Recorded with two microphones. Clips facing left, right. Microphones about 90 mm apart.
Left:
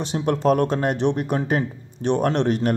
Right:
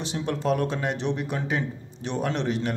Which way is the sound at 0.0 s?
45° left (ahead or behind).